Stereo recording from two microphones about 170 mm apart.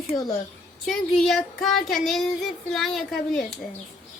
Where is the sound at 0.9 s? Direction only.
Centre (ahead or behind).